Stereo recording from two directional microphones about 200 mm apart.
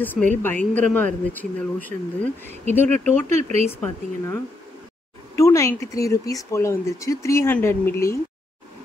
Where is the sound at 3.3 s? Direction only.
35° right (ahead or behind).